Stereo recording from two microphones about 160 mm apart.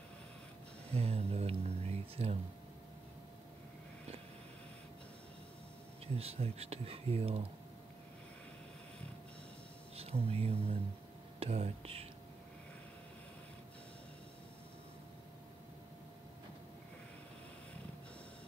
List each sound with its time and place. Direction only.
0.9 s speech: 40° right (ahead or behind)
6.1 s speech: 40° right (ahead or behind)
9.9 s speech: 40° right (ahead or behind)